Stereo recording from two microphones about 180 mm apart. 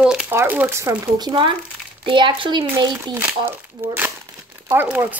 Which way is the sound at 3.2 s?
10° right (ahead or behind).